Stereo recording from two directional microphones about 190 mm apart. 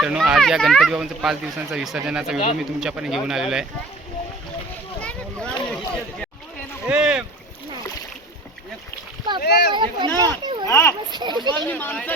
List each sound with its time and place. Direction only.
0.0 s speech: 5° right (ahead or behind)
4.9 s a sound: 5° left (ahead or behind)
6.8 s boat: 5° right (ahead or behind)
9.7 s speech: 25° right (ahead or behind)
10.2 s a sound: 20° right (ahead or behind)
10.7 s a child's voice: 10° left (ahead or behind)
11.1 s a child's voice: 20° right (ahead or behind)
11.7 s speech: 10° left (ahead or behind)